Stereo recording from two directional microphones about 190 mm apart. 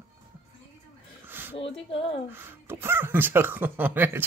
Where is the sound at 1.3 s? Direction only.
10° right (ahead or behind).